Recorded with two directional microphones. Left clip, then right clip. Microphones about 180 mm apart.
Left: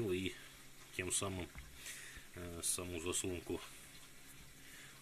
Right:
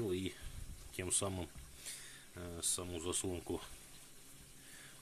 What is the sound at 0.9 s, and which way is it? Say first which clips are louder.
Speech: right 1 dB; 15° right (ahead or behind).